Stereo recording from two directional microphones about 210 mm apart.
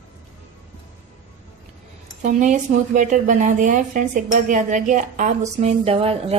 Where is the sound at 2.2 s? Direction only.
35° right (ahead or behind).